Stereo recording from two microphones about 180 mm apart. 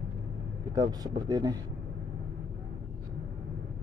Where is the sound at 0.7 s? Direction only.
20° right (ahead or behind).